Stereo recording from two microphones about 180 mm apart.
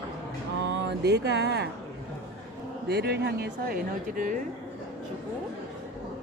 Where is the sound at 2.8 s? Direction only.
65° right (ahead or behind).